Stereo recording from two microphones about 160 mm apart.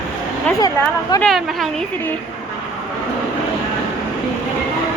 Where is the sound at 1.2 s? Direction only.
Centre (ahead or behind).